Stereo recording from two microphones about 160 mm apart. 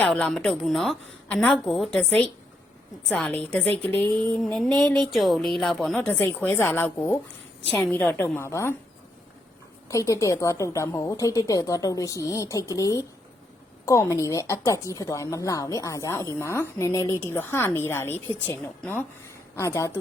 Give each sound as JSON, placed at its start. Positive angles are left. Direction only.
{"t": 0.1, "sound": "a woman's voice", "side_deg": 5}
{"t": 9.9, "sound": "a woman's voice", "side_deg": 20}